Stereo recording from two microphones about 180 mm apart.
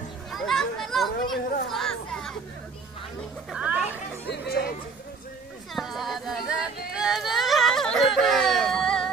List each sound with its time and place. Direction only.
0.3 s children playing: centre (ahead or behind)
3.5 s music: 5° right (ahead or behind)
4.3 s music: 65° left (ahead or behind)
5.8 s a sound: centre (ahead or behind)
6.9 s yodeling: 5° right (ahead or behind)